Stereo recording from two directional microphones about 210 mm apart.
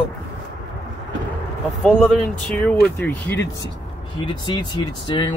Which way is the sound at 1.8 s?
Centre (ahead or behind).